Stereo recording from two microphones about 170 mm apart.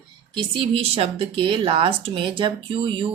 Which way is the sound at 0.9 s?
35° right (ahead or behind).